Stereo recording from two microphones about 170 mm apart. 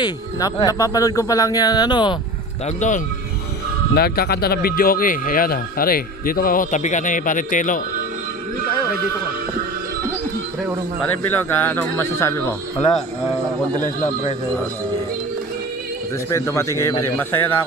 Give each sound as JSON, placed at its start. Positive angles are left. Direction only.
{"t": 0.0, "sound": "speech", "side_deg": 25}
{"t": 2.6, "sound": "speech", "side_deg": 45}
{"t": 3.9, "sound": "speech", "side_deg": 65}
{"t": 11.4, "sound": "speech", "side_deg": 10}
{"t": 16.3, "sound": "speech", "side_deg": 15}